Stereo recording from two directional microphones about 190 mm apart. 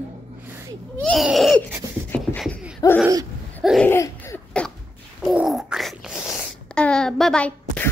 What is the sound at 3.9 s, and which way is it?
Laughter, 15° left (ahead or behind).